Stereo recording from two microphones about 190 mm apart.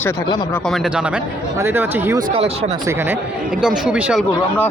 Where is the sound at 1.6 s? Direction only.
10° right (ahead or behind).